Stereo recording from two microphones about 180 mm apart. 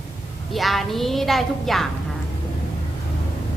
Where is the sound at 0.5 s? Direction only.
Centre (ahead or behind).